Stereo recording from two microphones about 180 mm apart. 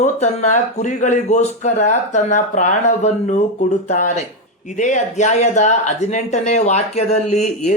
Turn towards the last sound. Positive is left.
turn(degrees=40)  # may be behind; listen again after turning